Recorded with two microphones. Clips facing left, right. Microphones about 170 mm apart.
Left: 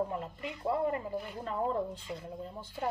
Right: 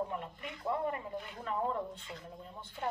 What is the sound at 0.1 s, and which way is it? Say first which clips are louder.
A woman's voice: left 3 dB; 30° left (ahead or behind).